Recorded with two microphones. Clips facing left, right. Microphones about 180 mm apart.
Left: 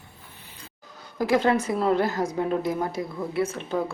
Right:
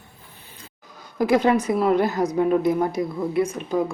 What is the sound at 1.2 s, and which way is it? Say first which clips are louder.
A woman's voice: right 3 dB; 15° right (ahead or behind).